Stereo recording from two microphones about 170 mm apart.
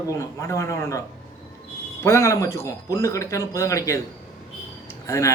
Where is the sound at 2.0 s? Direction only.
20° left (ahead or behind).